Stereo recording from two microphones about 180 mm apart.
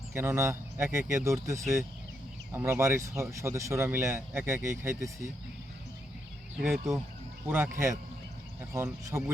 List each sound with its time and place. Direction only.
0.1 s speech: 15° right (ahead or behind)
6.6 s speech: 5° right (ahead or behind)
7.4 s speech: 15° right (ahead or behind)